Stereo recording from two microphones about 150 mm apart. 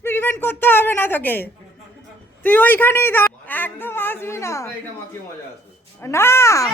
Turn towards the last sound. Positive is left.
turn(degrees=20)  # may be behind; listen again after turning